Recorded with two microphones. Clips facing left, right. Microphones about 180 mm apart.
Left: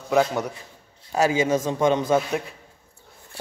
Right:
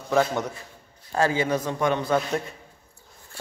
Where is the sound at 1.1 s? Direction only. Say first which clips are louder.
Left 3 dB; 15° left (ahead or behind).